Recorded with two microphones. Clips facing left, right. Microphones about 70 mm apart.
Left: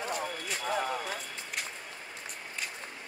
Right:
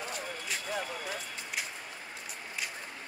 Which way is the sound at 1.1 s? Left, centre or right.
Centre.